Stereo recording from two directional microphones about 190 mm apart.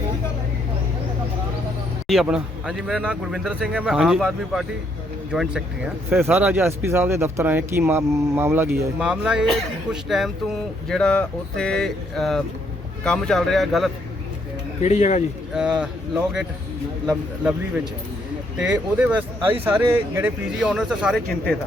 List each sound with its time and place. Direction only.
2.0 s a man's voice: centre (ahead or behind)
14.8 s speech: 35° left (ahead or behind)
15.5 s a man's voice: 5° right (ahead or behind)
18.5 s a man's voice: 5° right (ahead or behind)